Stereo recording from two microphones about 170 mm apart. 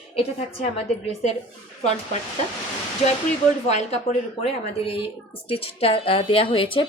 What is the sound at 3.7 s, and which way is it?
Speech, 40° left (ahead or behind).